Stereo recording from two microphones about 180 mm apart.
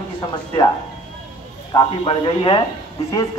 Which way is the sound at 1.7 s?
25° left (ahead or behind).